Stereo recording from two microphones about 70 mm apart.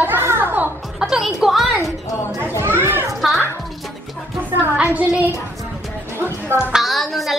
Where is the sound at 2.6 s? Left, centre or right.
Right.